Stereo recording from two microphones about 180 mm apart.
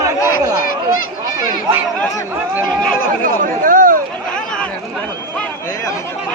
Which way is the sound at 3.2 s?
50° right (ahead or behind).